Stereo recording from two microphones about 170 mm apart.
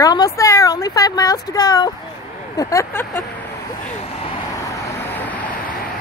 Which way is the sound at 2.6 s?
20° left (ahead or behind).